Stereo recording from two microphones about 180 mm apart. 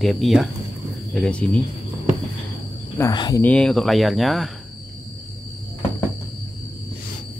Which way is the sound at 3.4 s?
5° left (ahead or behind).